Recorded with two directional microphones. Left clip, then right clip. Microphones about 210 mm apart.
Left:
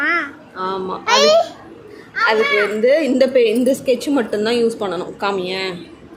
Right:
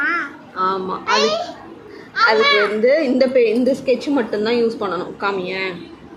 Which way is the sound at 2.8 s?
20° left (ahead or behind).